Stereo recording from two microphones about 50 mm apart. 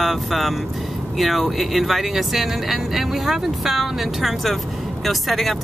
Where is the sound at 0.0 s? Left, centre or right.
Centre.